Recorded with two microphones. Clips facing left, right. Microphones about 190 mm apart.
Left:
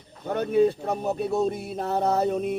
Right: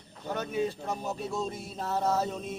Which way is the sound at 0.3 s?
55° left (ahead or behind).